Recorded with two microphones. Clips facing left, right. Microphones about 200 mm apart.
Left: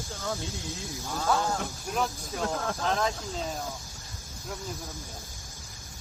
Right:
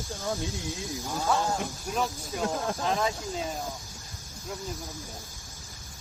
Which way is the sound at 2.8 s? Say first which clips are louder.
Left 1 dB; 5° right (ahead or behind).